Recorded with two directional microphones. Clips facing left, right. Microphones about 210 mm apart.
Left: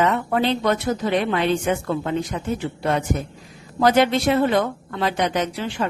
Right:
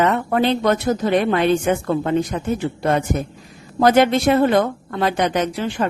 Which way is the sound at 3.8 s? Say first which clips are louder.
Right 3 dB; 50° right (ahead or behind).